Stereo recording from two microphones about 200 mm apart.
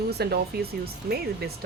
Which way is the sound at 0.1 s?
55° right (ahead or behind).